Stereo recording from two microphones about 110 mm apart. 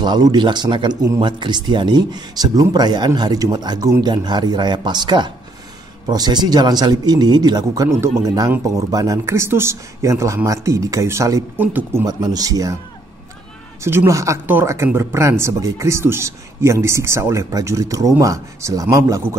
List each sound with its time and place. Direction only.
0.0 s speech: 40° right (ahead or behind)
11.5 s speech: 15° right (ahead or behind)
12.1 s speech: 35° right (ahead or behind)
13.8 s speech: 25° right (ahead or behind)